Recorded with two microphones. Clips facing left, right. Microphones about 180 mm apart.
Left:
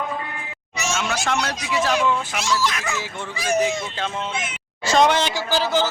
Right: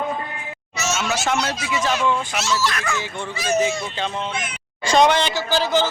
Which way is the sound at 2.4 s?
15° left (ahead or behind).